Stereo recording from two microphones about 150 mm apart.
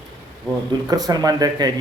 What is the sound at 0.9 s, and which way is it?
Speech, 25° right (ahead or behind).